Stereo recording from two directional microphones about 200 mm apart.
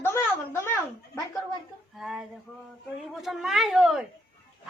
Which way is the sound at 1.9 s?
Centre (ahead or behind).